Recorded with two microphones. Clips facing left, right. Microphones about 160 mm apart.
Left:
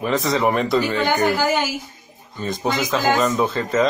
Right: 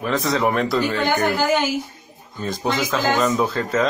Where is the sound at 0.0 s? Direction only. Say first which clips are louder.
Left 1 dB; centre (ahead or behind).